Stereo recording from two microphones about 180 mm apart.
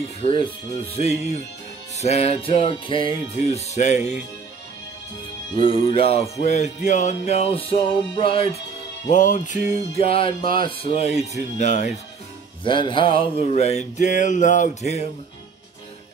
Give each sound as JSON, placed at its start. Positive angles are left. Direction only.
{"t": 0.2, "sound": "music", "side_deg": 30}
{"t": 2.0, "sound": "music", "side_deg": 35}
{"t": 5.6, "sound": "music", "side_deg": 30}
{"t": 9.1, "sound": "music", "side_deg": 45}
{"t": 12.6, "sound": "music", "side_deg": 25}